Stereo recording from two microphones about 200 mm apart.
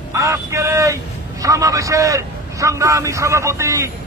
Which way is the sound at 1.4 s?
15° right (ahead or behind).